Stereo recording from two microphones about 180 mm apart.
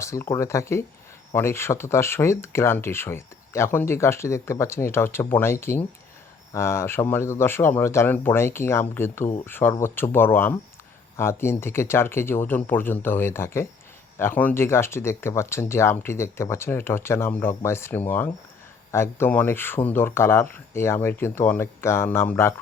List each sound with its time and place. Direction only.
0.0 s speech: 15° left (ahead or behind)